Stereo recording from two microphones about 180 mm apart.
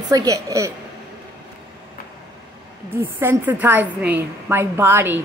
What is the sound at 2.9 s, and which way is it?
A woman's voice, 15° right (ahead or behind).